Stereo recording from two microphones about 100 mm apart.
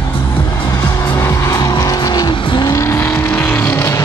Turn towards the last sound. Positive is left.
turn(degrees=30)  # may be behind; listen again after turning